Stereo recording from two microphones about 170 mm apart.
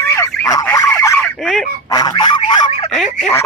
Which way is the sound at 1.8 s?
20° left (ahead or behind).